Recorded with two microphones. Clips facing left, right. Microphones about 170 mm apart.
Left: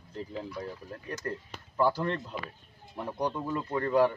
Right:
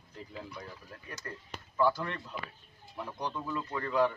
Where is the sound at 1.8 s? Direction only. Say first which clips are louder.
Left 3 dB; 30° left (ahead or behind).